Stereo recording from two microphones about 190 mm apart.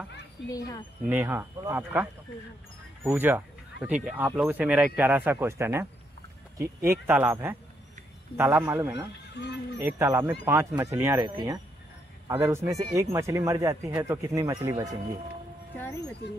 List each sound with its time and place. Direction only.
0.5 s speech: 20° left (ahead or behind)
1.0 s speech: 10° right (ahead or behind)
6.9 s speech: 10° right (ahead or behind)
9.3 s speech: 65° left (ahead or behind)
9.8 s speech: 15° right (ahead or behind)
15.8 s speech: 15° left (ahead or behind)